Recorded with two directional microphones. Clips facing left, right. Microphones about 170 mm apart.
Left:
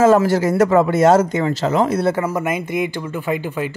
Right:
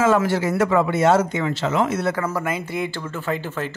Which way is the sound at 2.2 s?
15° left (ahead or behind).